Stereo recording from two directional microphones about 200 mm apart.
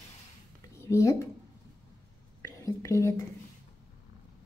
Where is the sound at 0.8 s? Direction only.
15° left (ahead or behind).